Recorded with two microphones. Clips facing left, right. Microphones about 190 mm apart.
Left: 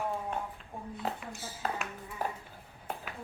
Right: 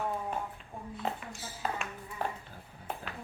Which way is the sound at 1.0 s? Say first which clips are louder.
Right 1 dB; centre (ahead or behind).